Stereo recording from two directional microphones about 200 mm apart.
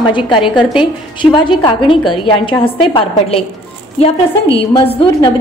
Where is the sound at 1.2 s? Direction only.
25° left (ahead or behind).